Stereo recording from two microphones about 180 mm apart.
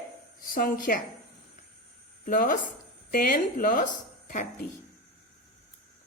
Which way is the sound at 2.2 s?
50° left (ahead or behind).